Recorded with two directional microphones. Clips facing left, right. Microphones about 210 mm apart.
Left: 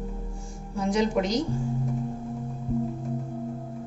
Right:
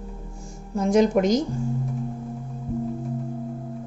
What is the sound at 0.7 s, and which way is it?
Speech, 45° right (ahead or behind).